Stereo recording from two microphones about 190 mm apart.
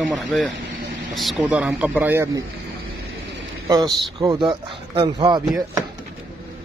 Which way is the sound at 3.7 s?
20° right (ahead or behind).